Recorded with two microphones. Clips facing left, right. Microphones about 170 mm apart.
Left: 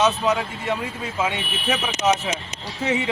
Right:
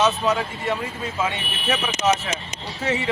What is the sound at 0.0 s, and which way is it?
Speech, 15° left (ahead or behind).